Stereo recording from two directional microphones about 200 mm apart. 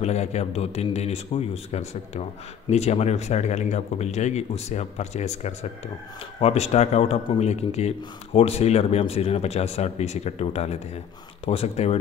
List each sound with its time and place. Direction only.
0.0 s speech: 35° left (ahead or behind)